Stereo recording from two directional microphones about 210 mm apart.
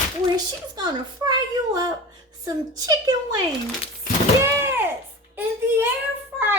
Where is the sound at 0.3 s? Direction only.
20° right (ahead or behind).